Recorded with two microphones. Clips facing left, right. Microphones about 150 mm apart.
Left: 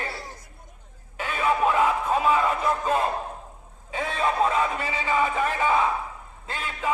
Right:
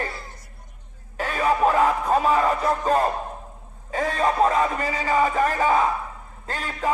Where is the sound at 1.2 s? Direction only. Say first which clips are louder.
Right 3 dB; 40° right (ahead or behind).